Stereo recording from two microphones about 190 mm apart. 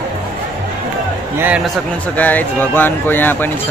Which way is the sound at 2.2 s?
10° left (ahead or behind).